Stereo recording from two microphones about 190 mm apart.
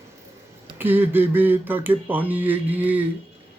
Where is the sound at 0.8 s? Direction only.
10° right (ahead or behind).